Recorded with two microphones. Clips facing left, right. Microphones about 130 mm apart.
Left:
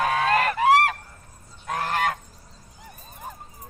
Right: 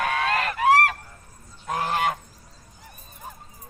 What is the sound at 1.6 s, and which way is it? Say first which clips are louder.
Goose: right 1 dB; 10° right (ahead or behind).